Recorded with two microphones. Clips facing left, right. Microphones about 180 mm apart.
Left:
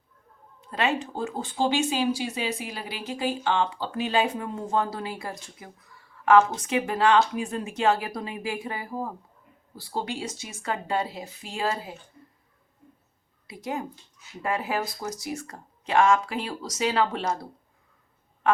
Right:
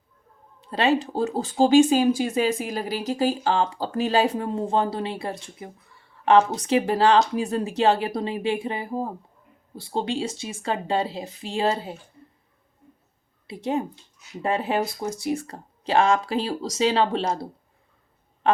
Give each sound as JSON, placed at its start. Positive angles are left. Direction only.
{"t": 0.7, "sound": "speech", "side_deg": -35}
{"t": 13.5, "sound": "speech", "side_deg": -30}